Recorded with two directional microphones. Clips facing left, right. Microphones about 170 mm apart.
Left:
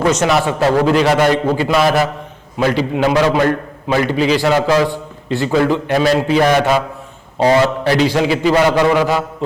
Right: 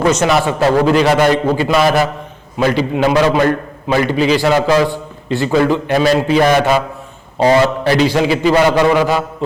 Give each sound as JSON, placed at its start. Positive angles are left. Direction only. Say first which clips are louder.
{"t": 0.0, "sound": "a man's voice", "louder": "right 1 dB", "side_deg": -20}
{"t": 0.9, "sound": "a man's voice", "louder": "right 1 dB", "side_deg": -10}